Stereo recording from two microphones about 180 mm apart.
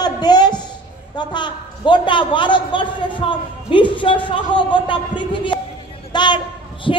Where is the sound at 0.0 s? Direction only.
25° left (ahead or behind).